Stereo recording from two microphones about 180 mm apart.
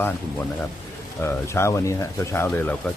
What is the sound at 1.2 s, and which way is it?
Speech, 15° left (ahead or behind).